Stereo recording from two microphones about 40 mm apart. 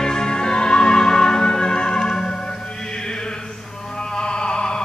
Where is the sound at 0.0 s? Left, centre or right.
Centre.